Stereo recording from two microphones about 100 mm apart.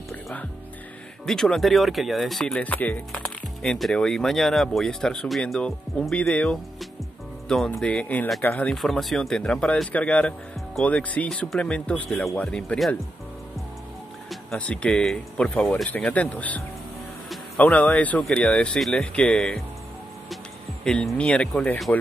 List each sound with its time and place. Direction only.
1.2 s speech: 5° left (ahead or behind)
3.1 s speech: 5° left (ahead or behind)
8.6 s speech: centre (ahead or behind)
14.3 s speech: 5° left (ahead or behind)
20.8 s speech: 5° left (ahead or behind)